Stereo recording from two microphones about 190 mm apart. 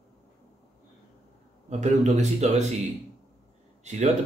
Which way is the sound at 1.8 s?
35° right (ahead or behind).